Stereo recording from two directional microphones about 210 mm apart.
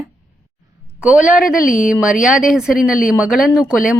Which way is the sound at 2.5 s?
Centre (ahead or behind).